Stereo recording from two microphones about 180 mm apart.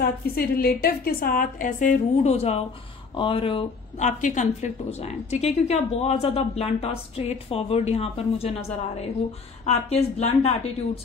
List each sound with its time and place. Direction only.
0.0 s a woman's voice: 55° left (ahead or behind); by 4.1 s 30° left (ahead or behind)
4.2 s a woman's voice: 40° left (ahead or behind)